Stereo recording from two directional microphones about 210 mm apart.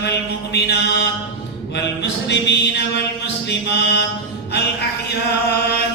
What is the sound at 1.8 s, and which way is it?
Music, 55° left (ahead or behind).